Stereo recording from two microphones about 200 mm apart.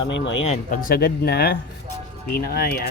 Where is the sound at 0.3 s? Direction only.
35° left (ahead or behind).